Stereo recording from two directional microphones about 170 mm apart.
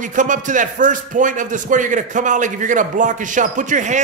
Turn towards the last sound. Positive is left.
turn(degrees=-45)  # may be behind; listen again after turning